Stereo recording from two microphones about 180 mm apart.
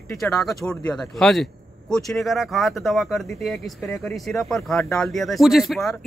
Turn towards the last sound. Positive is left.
turn(degrees=0)  # may be behind; listen again after turning